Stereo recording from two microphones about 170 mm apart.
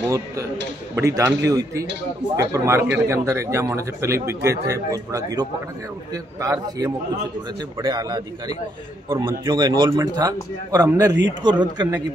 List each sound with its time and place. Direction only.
0.0 s a man's voice: 15° right (ahead or behind)
9.2 s a man's voice: 25° right (ahead or behind)